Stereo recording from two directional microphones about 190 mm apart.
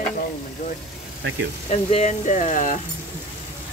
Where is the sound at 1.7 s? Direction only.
35° left (ahead or behind).